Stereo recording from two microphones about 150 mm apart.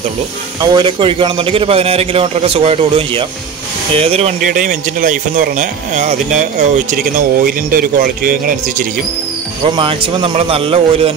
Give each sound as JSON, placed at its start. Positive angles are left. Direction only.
{"t": 0.6, "sound": "a man's voice", "side_deg": -30}
{"t": 4.4, "sound": "speech", "side_deg": -65}
{"t": 9.8, "sound": "a man's voice", "side_deg": -35}